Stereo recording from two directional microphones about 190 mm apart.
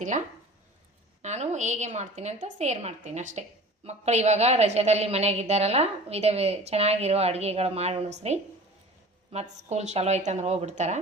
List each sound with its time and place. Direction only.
1.2 s a woman's voice: 35° right (ahead or behind)